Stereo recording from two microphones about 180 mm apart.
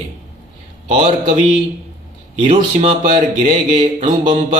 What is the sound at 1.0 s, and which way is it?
Speech, 35° right (ahead or behind).